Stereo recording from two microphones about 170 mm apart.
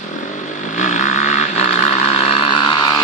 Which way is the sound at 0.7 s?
45° left (ahead or behind).